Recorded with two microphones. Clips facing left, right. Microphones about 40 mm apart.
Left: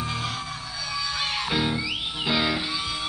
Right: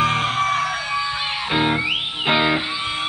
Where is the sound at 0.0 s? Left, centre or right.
Right.